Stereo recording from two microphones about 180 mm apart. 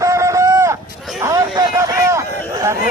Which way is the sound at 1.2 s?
20° right (ahead or behind).